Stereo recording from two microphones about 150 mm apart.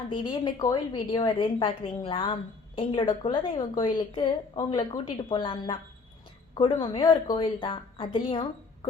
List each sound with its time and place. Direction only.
0.1 s a woman's voice: 30° left (ahead or behind)